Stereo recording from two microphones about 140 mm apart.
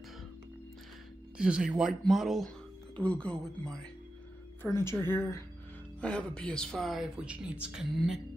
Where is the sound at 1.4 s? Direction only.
5° right (ahead or behind).